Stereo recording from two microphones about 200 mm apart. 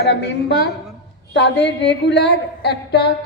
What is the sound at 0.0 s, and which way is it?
A woman's voice, 55° left (ahead or behind).